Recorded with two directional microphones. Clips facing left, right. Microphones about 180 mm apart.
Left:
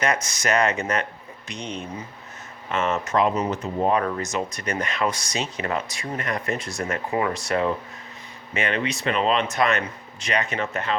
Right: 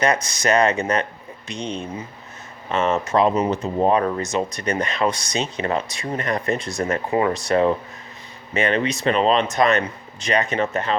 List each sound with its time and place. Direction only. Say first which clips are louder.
0.0 s speech: right 4 dB; 35° right (ahead or behind)
2.7 s speech: right 3 dB; 30° right (ahead or behind)